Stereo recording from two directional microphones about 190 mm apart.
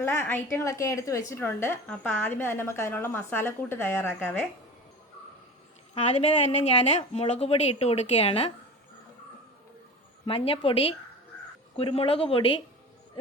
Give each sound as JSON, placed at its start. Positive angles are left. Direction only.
{"t": 0.0, "sound": "a woman's voice", "side_deg": 10}
{"t": 6.4, "sound": "speech", "side_deg": 35}
{"t": 10.2, "sound": "speech", "side_deg": 30}
{"t": 11.8, "sound": "speech", "side_deg": 30}